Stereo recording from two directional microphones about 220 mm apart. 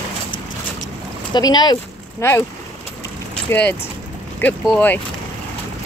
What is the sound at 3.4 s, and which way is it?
Speech, 5° left (ahead or behind).